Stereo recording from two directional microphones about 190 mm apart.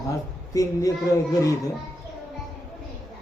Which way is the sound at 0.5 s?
15° left (ahead or behind).